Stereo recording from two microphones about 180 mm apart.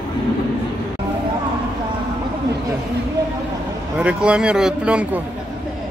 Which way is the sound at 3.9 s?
5° right (ahead or behind).